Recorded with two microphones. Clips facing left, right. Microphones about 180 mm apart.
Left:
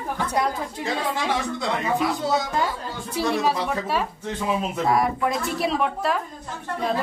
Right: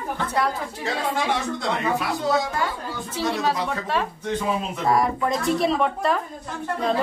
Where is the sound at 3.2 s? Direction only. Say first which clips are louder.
Left 1 dB; 10° left (ahead or behind).